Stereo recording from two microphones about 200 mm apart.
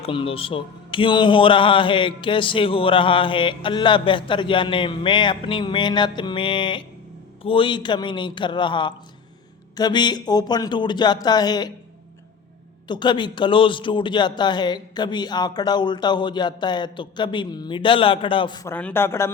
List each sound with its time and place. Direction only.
0.0 s speech: 25° left (ahead or behind)
12.9 s speech: 20° left (ahead or behind)
18.7 s speech: 10° left (ahead or behind)